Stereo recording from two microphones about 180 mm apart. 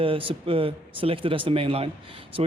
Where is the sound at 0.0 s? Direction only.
30° right (ahead or behind).